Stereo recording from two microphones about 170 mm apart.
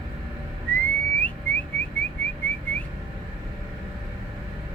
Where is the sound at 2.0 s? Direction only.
10° left (ahead or behind).